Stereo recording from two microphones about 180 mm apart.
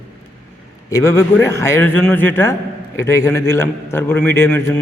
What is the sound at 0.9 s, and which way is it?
A man's voice, 15° left (ahead or behind).